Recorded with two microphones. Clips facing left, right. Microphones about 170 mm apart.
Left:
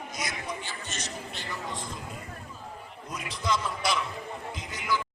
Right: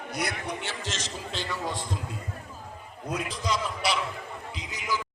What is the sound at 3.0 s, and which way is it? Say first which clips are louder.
Speech: right 7 dB; 75° right (ahead or behind).